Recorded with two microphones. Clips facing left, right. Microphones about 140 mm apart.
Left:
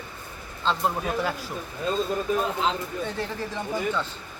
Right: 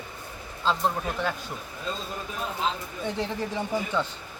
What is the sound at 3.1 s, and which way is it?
Speech, 15° right (ahead or behind).